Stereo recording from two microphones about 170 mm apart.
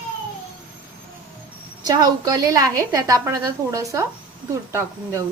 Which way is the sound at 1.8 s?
25° right (ahead or behind).